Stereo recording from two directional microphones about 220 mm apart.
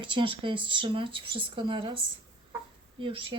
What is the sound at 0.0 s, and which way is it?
Speech, 20° right (ahead or behind).